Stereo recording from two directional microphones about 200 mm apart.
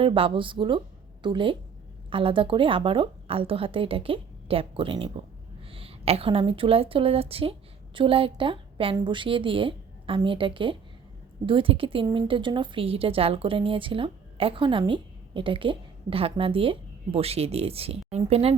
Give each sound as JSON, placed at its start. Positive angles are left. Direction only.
{"t": 0.0, "sound": "a woman's voice", "side_deg": -25}